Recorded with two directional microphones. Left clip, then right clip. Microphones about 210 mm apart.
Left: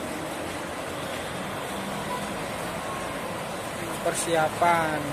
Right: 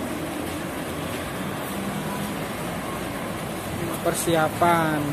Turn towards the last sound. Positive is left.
turn(degrees=-10)  # may be behind; listen again after turning